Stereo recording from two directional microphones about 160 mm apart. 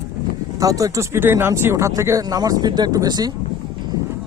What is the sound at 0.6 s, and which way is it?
Speech, 20° right (ahead or behind).